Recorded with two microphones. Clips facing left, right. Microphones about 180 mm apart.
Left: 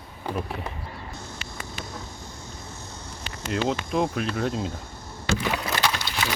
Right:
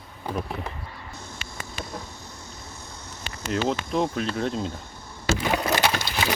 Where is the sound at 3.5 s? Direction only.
Centre (ahead or behind).